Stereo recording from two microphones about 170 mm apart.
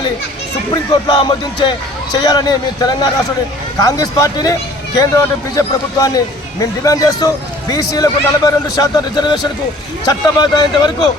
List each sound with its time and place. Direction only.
0.7 s a man's voice: 25° left (ahead or behind)